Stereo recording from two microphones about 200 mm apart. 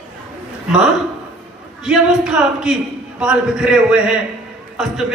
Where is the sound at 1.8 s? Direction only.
5° right (ahead or behind).